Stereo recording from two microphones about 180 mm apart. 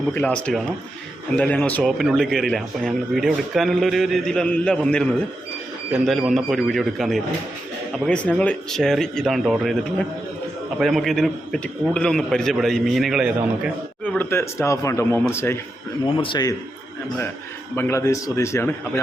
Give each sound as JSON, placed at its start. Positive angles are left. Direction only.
{"t": 0.1, "sound": "a man's voice", "side_deg": 5}
{"t": 14.0, "sound": "speech", "side_deg": 10}
{"t": 16.1, "sound": "a man's voice", "side_deg": 25}
{"t": 17.7, "sound": "speech", "side_deg": 15}